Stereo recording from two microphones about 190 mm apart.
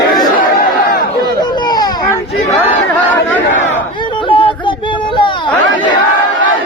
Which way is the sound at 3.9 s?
25° left (ahead or behind).